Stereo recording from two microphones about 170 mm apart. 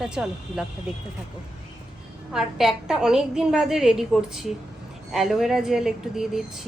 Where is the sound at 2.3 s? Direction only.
5° right (ahead or behind).